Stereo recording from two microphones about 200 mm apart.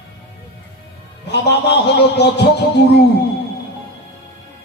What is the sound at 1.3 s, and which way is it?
A man's voice, 55° left (ahead or behind).